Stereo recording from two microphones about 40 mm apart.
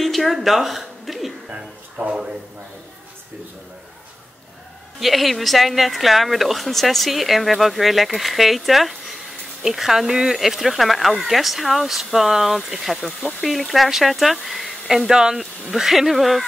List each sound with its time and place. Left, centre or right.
0.0 s a woman's voice: centre
1.5 s a sound: right
5.0 s speech: centre